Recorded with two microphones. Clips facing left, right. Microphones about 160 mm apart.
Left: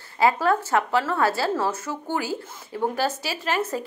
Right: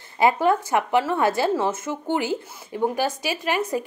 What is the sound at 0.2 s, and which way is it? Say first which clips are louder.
A woman's voice: right 2 dB; 20° right (ahead or behind).